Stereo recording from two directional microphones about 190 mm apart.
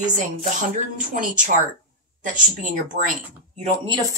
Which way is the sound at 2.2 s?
45° right (ahead or behind).